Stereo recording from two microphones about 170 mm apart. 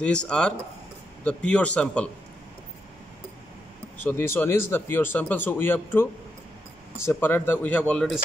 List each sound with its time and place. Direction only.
0.0 s a man's voice: 5° left (ahead or behind)
4.1 s a man's voice: 15° left (ahead or behind)